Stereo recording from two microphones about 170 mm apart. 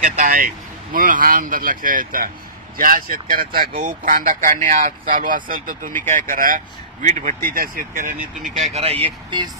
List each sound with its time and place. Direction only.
0.0 s speech: 50° right (ahead or behind)
7.4 s speech: 60° right (ahead or behind)
8.5 s speech: 40° right (ahead or behind)